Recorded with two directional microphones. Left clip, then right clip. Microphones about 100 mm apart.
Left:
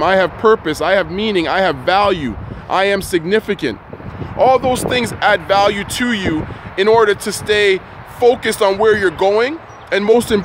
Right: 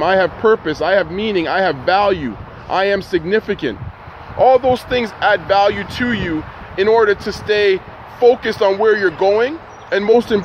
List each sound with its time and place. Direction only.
0.0 s speech: 40° left (ahead or behind)